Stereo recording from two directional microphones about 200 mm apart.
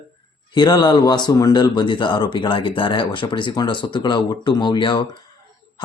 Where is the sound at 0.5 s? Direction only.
20° left (ahead or behind).